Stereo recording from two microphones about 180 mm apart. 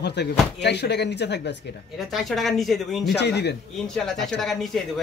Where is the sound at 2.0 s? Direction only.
Centre (ahead or behind).